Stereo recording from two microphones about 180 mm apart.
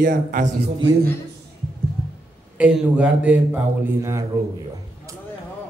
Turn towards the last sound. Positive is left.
turn(degrees=-15)  # may be behind; listen again after turning